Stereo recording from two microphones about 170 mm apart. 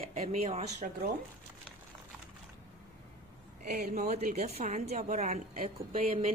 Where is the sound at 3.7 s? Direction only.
45° right (ahead or behind).